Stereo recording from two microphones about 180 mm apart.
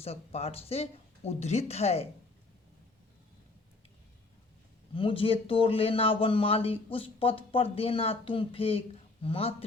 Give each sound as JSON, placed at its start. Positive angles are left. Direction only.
{"t": 0.0, "sound": "speech", "side_deg": 35}
{"t": 4.9, "sound": "speech", "side_deg": 30}